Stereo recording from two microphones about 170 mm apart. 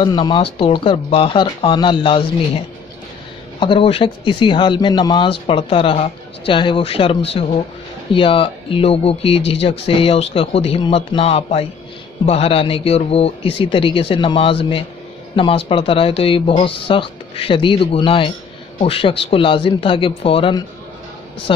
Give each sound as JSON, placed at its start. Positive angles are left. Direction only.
{"t": 0.0, "sound": "a woman's voice", "side_deg": 30}